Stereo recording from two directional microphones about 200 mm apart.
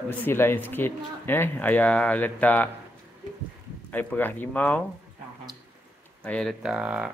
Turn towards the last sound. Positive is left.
turn(degrees=-5)  # may be behind; listen again after turning